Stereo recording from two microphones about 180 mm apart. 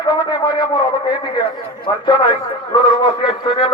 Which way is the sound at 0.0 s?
25° left (ahead or behind).